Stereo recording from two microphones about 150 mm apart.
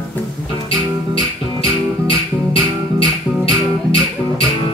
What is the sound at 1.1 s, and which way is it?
Music, 35° left (ahead or behind).